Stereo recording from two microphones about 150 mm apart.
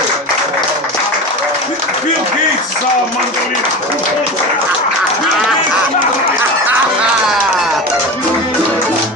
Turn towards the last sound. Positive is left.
turn(degrees=-5)  # may be behind; listen again after turning